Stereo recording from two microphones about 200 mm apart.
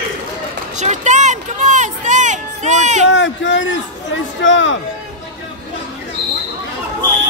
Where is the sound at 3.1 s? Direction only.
65° left (ahead or behind).